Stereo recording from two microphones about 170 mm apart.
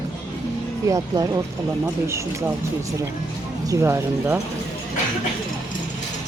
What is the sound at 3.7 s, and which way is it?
Speech, 15° right (ahead or behind).